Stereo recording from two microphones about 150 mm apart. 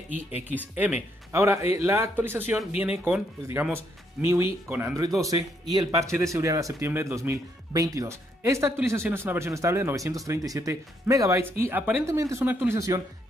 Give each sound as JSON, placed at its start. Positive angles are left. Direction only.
{"t": 1.3, "sound": "speech", "side_deg": -20}